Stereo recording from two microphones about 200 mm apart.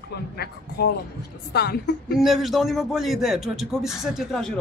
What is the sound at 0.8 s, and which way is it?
Speech, 50° left (ahead or behind).